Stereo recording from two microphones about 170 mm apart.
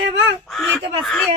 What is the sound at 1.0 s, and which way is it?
Speech, 5° left (ahead or behind).